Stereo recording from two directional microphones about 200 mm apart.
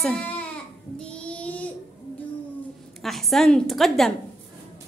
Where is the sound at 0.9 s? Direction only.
5° left (ahead or behind).